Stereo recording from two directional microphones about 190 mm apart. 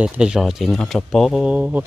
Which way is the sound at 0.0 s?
5° right (ahead or behind).